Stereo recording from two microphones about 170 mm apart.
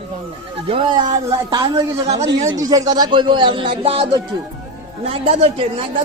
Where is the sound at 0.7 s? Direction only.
30° right (ahead or behind).